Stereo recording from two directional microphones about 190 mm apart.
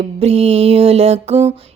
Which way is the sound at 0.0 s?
35° right (ahead or behind).